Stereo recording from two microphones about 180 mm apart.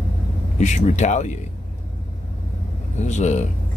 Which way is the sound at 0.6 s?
40° left (ahead or behind).